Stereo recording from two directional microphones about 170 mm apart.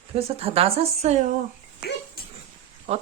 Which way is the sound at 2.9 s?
35° right (ahead or behind).